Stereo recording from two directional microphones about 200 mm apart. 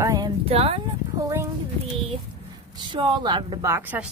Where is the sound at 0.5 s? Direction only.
30° right (ahead or behind).